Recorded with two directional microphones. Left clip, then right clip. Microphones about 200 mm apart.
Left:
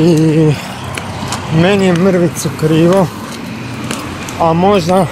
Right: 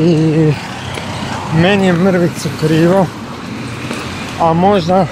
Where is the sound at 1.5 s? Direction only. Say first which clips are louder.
Left 1 dB; 15° left (ahead or behind).